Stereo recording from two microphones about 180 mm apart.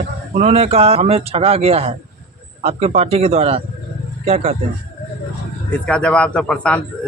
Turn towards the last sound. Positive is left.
turn(degrees=5)  # may be behind; listen again after turning